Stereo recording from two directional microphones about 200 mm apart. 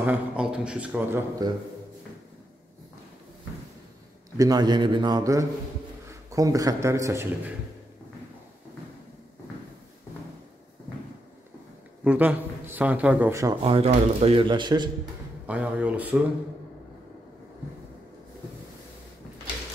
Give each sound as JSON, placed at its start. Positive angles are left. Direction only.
{"t": 0.0, "sound": "a man's voice", "side_deg": -5}
{"t": 1.4, "sound": "speech", "side_deg": -20}
{"t": 4.4, "sound": "a man's voice", "side_deg": -20}
{"t": 12.0, "sound": "a man's voice", "side_deg": -5}
{"t": 13.7, "sound": "speech", "side_deg": -30}
{"t": 15.4, "sound": "a man's voice", "side_deg": -5}